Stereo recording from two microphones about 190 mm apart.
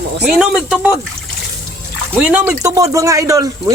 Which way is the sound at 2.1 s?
10° right (ahead or behind).